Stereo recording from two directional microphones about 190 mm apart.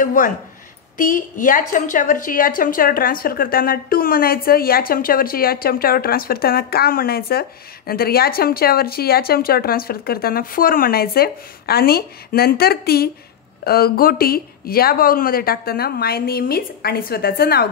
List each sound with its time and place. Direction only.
0.0 s a woman's voice: 45° left (ahead or behind)